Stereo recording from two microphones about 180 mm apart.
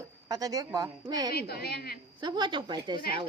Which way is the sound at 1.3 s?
60° left (ahead or behind).